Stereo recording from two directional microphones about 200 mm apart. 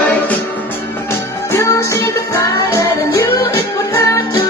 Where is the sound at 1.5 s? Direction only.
15° left (ahead or behind).